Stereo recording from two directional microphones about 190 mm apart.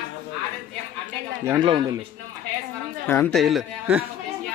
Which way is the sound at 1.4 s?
15° right (ahead or behind).